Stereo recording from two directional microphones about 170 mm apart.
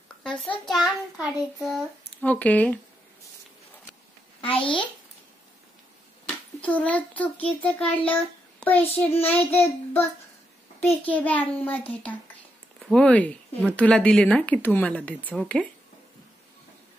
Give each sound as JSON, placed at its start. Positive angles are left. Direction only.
{"t": 0.2, "sound": "a sound", "side_deg": 5}
{"t": 0.7, "sound": "a child's voice", "side_deg": 0}
{"t": 4.4, "sound": "a child's voice", "side_deg": 30}
{"t": 6.2, "sound": "a child's voice", "side_deg": 10}